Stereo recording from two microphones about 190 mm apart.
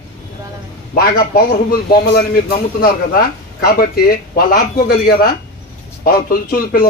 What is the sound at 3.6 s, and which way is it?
Speech, 50° left (ahead or behind).